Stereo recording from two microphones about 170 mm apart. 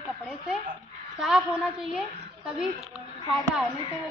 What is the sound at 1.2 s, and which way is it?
A woman's voice, centre (ahead or behind).